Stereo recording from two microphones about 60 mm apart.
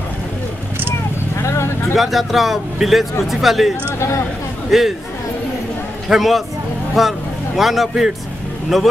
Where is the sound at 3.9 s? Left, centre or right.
Left.